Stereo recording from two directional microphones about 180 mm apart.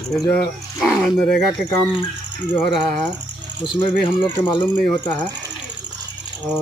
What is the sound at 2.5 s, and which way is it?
Speech, 25° left (ahead or behind).